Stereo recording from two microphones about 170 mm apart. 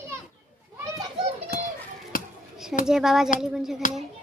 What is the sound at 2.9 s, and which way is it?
Speech, 5° right (ahead or behind).